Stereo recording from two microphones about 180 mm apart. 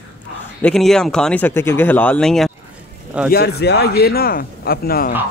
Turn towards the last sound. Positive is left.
turn(degrees=55)  # may be behind; listen again after turning